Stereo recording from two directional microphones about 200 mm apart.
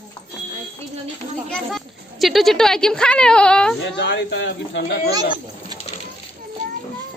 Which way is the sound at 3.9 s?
60° left (ahead or behind).